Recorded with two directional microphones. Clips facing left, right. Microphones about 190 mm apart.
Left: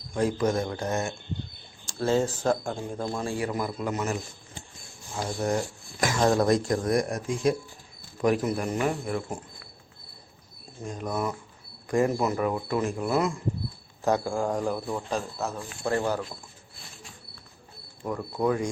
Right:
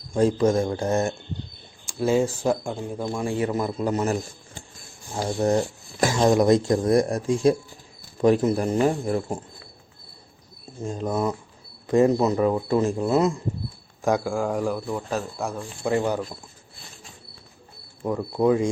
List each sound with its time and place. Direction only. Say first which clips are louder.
0.1 s speech: right 5 dB; 25° right (ahead or behind)
1.9 s a man's voice: right 3 dB; 10° right (ahead or behind); by 6.2 s 30° right (ahead or behind)
6.2 s speech: right 4 dB; 15° right (ahead or behind)
10.8 s speech: right 5 dB; 25° right (ahead or behind)
14.0 s a man's voice: right 2 dB; 10° right (ahead or behind)
18.0 s speech: right 5 dB; 25° right (ahead or behind)